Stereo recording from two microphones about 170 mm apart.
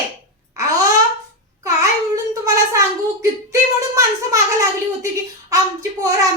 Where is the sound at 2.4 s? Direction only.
20° right (ahead or behind).